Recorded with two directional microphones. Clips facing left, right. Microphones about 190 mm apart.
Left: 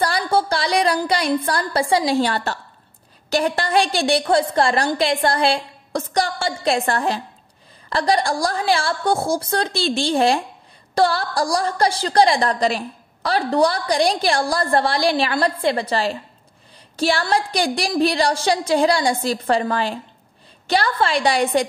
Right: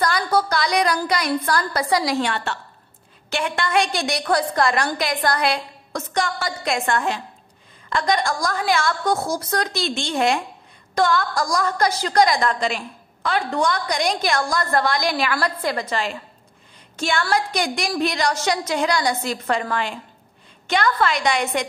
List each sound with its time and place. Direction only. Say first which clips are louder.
0.0 s a woman's voice: left 1 dB; 30° left (ahead or behind)